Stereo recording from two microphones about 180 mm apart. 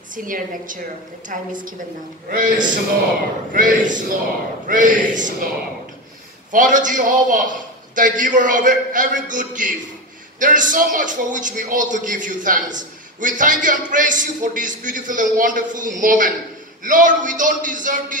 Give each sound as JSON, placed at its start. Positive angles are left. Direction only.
{"t": 0.1, "sound": "a man's voice", "side_deg": -50}
{"t": 6.5, "sound": "a man's voice", "side_deg": -45}